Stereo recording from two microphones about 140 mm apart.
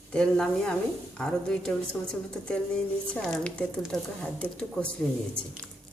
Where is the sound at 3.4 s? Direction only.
5° left (ahead or behind).